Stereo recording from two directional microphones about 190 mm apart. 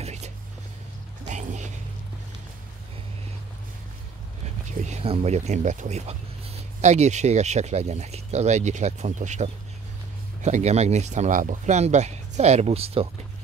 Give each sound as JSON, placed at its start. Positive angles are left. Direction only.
{"t": 0.0, "sound": "whispering", "side_deg": -35}
{"t": 1.2, "sound": "music", "side_deg": -40}
{"t": 4.8, "sound": "speech", "side_deg": -30}